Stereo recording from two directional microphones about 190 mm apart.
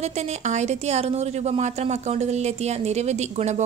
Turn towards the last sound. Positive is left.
turn(degrees=-35)  # may be behind; listen again after turning